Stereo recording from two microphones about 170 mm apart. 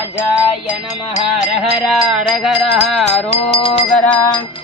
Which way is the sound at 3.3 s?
35° left (ahead or behind).